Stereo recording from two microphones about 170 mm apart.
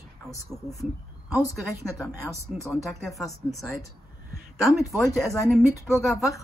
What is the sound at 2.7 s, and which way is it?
Speech, centre (ahead or behind).